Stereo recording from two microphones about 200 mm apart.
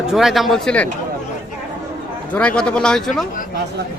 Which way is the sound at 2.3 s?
5° left (ahead or behind).